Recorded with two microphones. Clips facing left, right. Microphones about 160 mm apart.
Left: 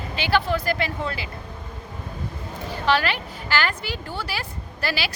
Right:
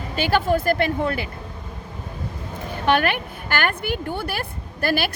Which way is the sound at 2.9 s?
55° right (ahead or behind).